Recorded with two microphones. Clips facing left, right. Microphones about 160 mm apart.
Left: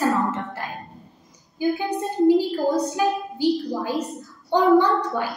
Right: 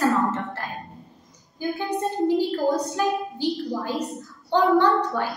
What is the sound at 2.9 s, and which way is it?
A woman's voice, 15° left (ahead or behind).